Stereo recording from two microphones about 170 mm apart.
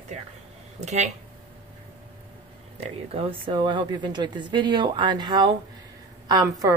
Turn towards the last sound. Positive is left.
turn(degrees=-20)  # may be behind; listen again after turning